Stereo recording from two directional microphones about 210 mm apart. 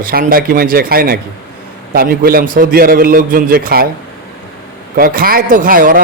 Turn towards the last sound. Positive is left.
turn(degrees=-40)  # may be behind; listen again after turning